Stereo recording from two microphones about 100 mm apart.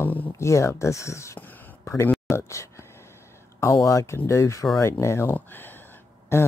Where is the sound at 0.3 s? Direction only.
30° left (ahead or behind).